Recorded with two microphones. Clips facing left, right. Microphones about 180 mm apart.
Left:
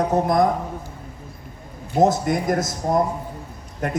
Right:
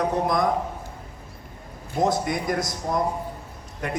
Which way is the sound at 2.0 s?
50° left (ahead or behind).